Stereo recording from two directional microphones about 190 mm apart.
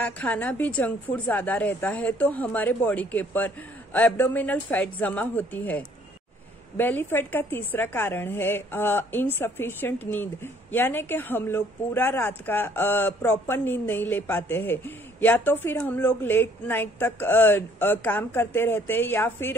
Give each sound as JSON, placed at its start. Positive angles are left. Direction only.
{"t": 0.0, "sound": "a woman's voice", "side_deg": 10}